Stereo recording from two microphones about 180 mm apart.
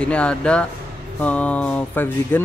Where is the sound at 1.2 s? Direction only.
5° left (ahead or behind).